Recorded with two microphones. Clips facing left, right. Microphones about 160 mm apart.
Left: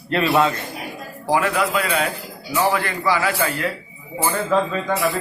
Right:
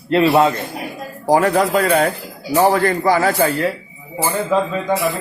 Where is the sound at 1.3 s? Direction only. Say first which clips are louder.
Right 5 dB; 40° right (ahead or behind).